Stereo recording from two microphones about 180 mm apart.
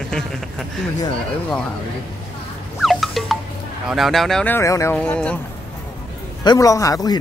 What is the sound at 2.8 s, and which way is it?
Music, centre (ahead or behind).